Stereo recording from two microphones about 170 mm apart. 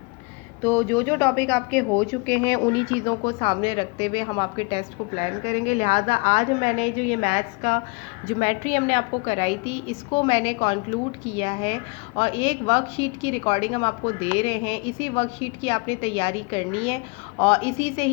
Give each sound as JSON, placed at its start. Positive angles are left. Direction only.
{"t": 0.6, "sound": "a woman's voice", "side_deg": 10}